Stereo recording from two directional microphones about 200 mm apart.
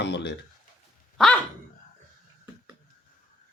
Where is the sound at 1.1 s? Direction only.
5° left (ahead or behind).